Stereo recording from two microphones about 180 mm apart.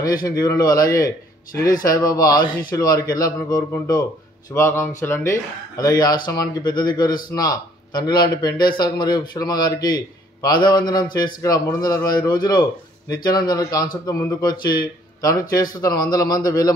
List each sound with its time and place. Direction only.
0.3 s a man's voice: 20° left (ahead or behind)